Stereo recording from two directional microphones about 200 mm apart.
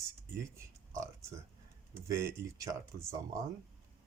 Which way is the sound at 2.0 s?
15° right (ahead or behind).